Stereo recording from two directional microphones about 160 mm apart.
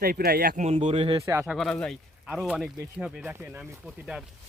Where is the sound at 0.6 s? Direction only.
40° right (ahead or behind).